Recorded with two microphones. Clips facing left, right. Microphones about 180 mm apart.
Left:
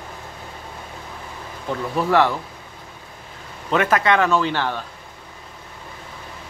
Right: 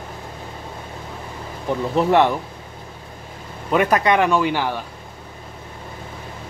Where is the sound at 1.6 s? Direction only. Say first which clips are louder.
Right 4 dB; 20° right (ahead or behind).